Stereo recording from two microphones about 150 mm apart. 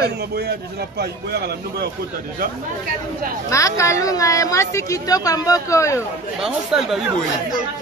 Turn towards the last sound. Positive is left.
turn(degrees=0)  # may be behind; listen again after turning